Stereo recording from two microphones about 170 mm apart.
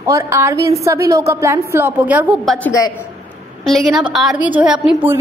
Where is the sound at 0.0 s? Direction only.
15° right (ahead or behind).